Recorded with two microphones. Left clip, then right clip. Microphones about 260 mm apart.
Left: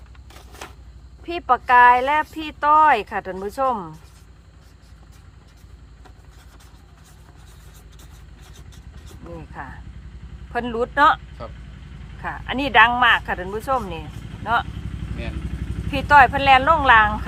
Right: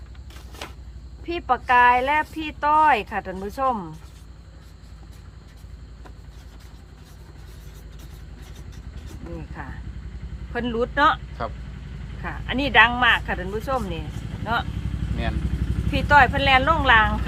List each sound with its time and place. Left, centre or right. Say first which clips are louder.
1.2 s speech: left 3 dB; centre
9.6 s vehicle: left 4 dB; left
10.5 s speech: left 2 dB; centre
11.4 s speech: right 6 dB; centre
12.2 s speech: left 1 dB; centre
15.9 s speech: left 3 dB; centre